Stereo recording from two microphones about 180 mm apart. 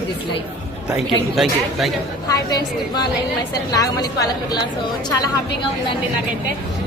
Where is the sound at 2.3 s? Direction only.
20° left (ahead or behind).